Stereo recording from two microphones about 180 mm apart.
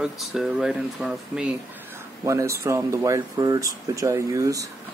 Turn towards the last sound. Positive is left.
turn(degrees=-20)  # may be behind; listen again after turning